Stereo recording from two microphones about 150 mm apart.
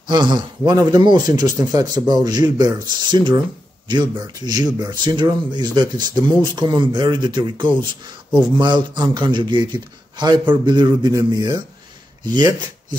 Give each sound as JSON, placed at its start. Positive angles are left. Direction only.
{"t": 0.1, "sound": "speech", "side_deg": -30}
{"t": 4.4, "sound": "a man's voice", "side_deg": -25}